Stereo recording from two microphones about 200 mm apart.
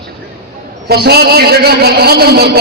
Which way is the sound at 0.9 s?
50° right (ahead or behind).